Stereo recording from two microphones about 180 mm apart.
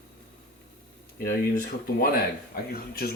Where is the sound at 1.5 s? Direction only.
55° left (ahead or behind).